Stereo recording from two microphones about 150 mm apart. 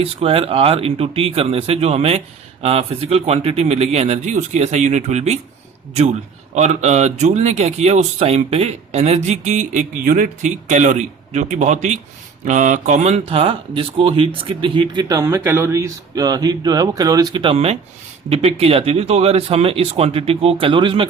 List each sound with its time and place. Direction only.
0.0 s speech: 40° right (ahead or behind)
6.5 s speech: 50° right (ahead or behind)
15.0 s speech: 20° right (ahead or behind); by 21.1 s 35° right (ahead or behind)